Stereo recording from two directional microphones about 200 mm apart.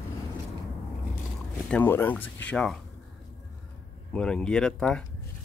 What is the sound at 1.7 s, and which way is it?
Speech, 10° left (ahead or behind).